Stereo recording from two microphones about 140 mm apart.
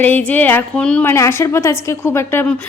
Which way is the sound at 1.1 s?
20° left (ahead or behind).